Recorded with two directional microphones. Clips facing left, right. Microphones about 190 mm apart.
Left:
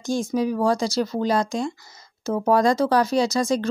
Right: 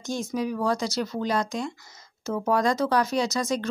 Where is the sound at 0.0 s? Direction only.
30° left (ahead or behind).